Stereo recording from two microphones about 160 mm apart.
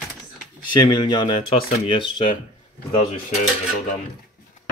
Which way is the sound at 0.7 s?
30° left (ahead or behind).